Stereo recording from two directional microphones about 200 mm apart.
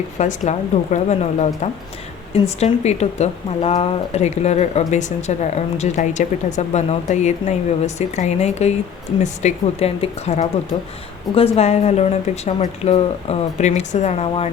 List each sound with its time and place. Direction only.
0.2 s speech: 35° left (ahead or behind)
2.6 s speech: 35° left (ahead or behind)